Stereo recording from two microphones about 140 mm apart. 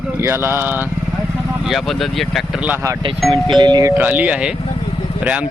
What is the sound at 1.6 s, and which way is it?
Speech, centre (ahead or behind).